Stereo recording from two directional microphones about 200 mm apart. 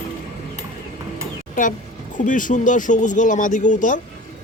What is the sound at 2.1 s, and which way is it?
Speech, 40° left (ahead or behind).